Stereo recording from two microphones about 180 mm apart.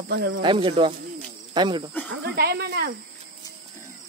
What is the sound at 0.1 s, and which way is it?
Speech, 75° right (ahead or behind).